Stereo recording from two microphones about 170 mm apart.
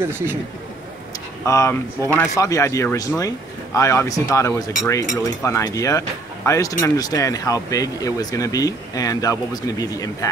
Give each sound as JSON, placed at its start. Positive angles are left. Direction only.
{"t": 0.0, "sound": "speech", "side_deg": -15}
{"t": 1.4, "sound": "speech", "side_deg": 15}